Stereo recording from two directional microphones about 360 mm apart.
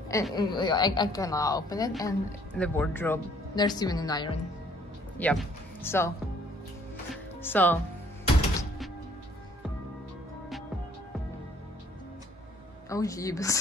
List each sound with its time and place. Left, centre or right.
0.1 s a woman's voice: centre
7.4 s speech: centre
12.9 s a woman's voice: centre